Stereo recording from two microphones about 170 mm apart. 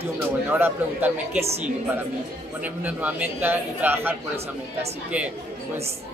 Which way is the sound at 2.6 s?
10° right (ahead or behind).